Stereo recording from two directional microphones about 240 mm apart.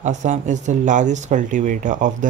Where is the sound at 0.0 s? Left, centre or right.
Right.